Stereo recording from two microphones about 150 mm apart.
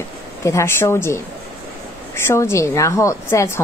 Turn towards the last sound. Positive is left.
turn(degrees=20)  # may be behind; listen again after turning